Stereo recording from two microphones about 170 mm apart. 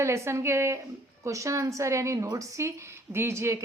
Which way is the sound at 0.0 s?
15° right (ahead or behind).